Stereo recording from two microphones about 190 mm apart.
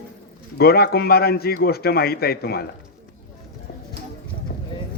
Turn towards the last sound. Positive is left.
turn(degrees=65)  # may be behind; listen again after turning